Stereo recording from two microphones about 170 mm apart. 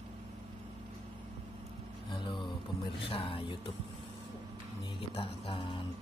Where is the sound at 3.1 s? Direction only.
30° left (ahead or behind).